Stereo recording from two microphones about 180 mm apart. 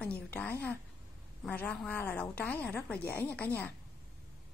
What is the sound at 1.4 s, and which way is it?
A woman's voice, 10° left (ahead or behind).